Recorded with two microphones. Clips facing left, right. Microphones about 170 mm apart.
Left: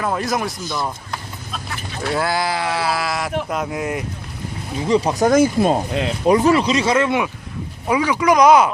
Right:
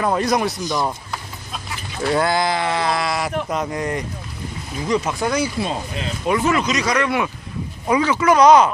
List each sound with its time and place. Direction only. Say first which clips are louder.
0.2 s speech: right 3 dB; centre (ahead or behind)
0.6 s speech: right 3 dB; 15° right (ahead or behind)
2.0 s speech: right 2 dB; 5° left (ahead or behind)
4.8 s speech: left 4 dB; 30° left (ahead or behind); by 5.8 s 45° left (ahead or behind)
6.2 s speech: left 4 dB; 35° left (ahead or behind)
7.9 s speech: even; 10° left (ahead or behind)